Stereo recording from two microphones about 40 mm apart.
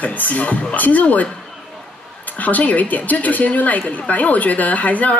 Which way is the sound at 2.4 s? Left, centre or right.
Left.